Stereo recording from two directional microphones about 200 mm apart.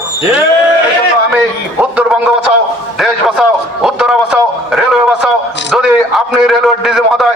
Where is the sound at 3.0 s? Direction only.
Centre (ahead or behind).